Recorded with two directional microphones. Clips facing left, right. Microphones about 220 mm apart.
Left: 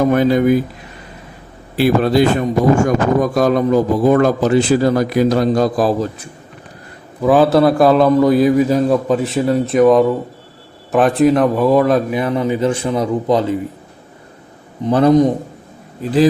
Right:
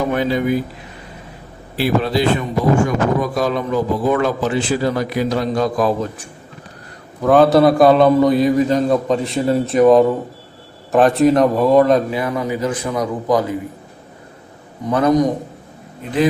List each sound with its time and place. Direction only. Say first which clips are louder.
0.0 s speech: left 5 dB; 45° left (ahead or behind)
1.8 s speech: left 4 dB; 50° left (ahead or behind)
7.3 s a man's voice: even; centre (ahead or behind)
12.1 s a man's voice: left 4 dB; 25° left (ahead or behind)
14.8 s a man's voice: left 4 dB; 30° left (ahead or behind)